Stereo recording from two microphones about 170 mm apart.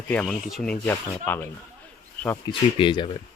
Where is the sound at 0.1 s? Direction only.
5° left (ahead or behind).